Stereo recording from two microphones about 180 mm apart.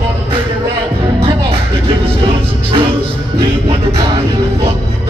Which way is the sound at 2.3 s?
30° right (ahead or behind).